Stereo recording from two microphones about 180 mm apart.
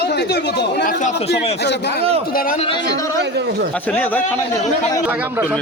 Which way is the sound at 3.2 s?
70° right (ahead or behind).